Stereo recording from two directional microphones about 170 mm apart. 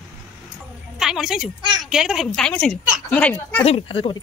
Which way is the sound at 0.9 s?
5° right (ahead or behind).